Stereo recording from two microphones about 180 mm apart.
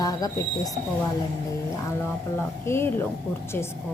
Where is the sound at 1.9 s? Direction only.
15° left (ahead or behind).